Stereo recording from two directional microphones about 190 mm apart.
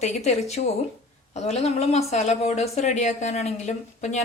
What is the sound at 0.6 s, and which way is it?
Speech, 50° left (ahead or behind).